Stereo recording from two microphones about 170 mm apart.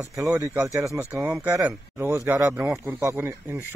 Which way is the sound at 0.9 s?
10° right (ahead or behind).